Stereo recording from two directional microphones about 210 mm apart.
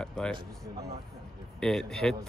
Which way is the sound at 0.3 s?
25° right (ahead or behind).